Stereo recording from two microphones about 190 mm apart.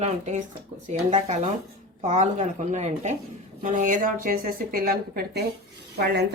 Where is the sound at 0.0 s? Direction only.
35° right (ahead or behind).